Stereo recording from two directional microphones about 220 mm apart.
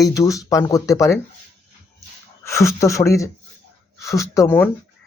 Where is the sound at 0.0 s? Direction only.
15° left (ahead or behind).